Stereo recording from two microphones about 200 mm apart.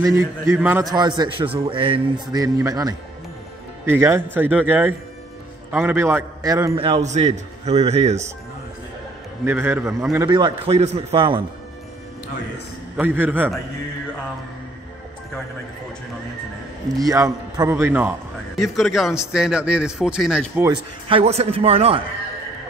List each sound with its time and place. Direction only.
0.0 s a man's voice: 15° right (ahead or behind); by 8.3 s 35° right (ahead or behind)
9.4 s a man's voice: 10° right (ahead or behind)
12.9 s a man's voice: 10° right (ahead or behind)
16.9 s a man's voice: 15° right (ahead or behind)
18.6 s a man's voice: centre (ahead or behind)
20.6 s a man's voice: 25° right (ahead or behind)